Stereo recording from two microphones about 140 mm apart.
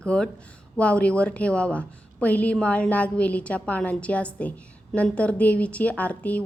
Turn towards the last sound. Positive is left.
turn(degrees=10)  # may be behind; listen again after turning